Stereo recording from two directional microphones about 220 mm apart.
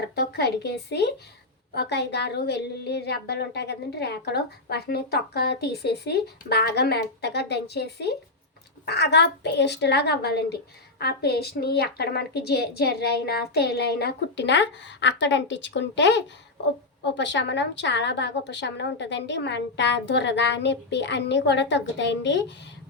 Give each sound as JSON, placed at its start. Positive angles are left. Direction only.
{"t": 0.0, "sound": "a woman's voice", "side_deg": 50}